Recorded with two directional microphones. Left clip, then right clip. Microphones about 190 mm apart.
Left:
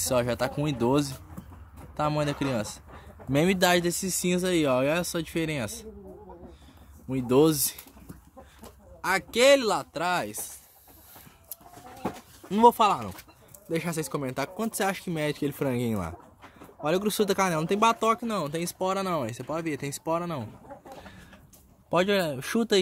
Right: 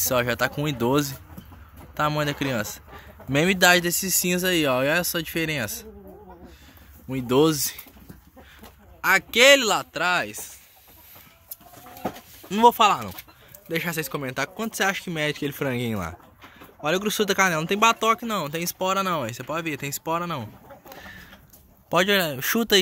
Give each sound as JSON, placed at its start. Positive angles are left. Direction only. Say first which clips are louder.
{"t": 0.0, "sound": "speech", "louder": "right 3 dB", "side_deg": 0}
{"t": 7.1, "sound": "speech", "louder": "right 2 dB", "side_deg": 0}
{"t": 9.0, "sound": "speech", "louder": "right 5 dB", "side_deg": -5}
{"t": 12.4, "sound": "speech", "louder": "right 3 dB", "side_deg": 5}
{"t": 21.9, "sound": "speech", "louder": "right 4 dB", "side_deg": 0}